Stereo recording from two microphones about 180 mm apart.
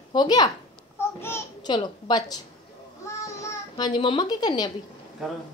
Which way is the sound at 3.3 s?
20° left (ahead or behind).